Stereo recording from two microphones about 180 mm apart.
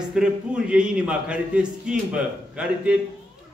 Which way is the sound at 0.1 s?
5° right (ahead or behind).